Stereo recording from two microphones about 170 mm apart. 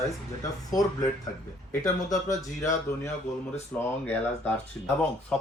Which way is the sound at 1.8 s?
20° left (ahead or behind).